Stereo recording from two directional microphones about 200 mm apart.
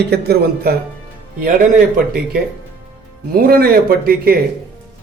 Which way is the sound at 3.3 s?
50° right (ahead or behind).